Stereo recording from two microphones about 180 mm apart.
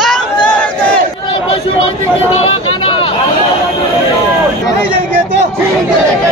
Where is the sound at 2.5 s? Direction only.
30° left (ahead or behind).